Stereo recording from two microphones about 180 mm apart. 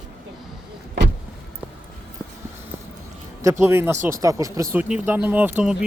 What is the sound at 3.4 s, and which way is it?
Speech, 15° right (ahead or behind).